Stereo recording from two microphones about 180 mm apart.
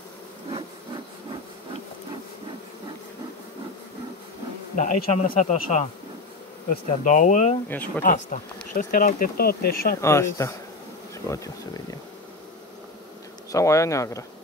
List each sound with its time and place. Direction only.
4.7 s a man's voice: 45° left (ahead or behind)
8.0 s bee: 50° left (ahead or behind)
8.7 s speech: 50° left (ahead or behind)
10.0 s speech: 15° left (ahead or behind)
13.5 s speech: 15° left (ahead or behind)